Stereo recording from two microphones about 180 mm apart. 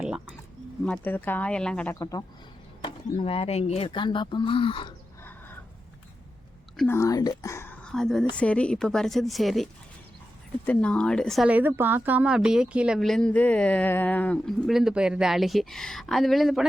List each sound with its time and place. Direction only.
0.0 s bird: 5° right (ahead or behind)
0.9 s speech: 10° left (ahead or behind)
2.0 s speech: 20° left (ahead or behind)
2.8 s speech: 30° left (ahead or behind)
6.8 s a woman's voice: 15° left (ahead or behind)
10.7 s a woman's voice: 5° left (ahead or behind)